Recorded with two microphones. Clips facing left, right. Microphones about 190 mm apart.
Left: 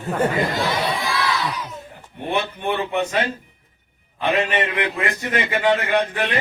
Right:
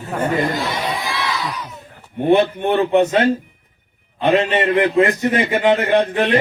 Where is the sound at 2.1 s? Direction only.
55° right (ahead or behind).